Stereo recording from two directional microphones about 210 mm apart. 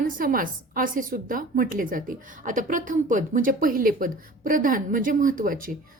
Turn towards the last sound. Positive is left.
turn(degrees=-40)  # may be behind; listen again after turning